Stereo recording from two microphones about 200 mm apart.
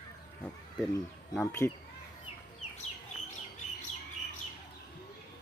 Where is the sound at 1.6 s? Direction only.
15° left (ahead or behind).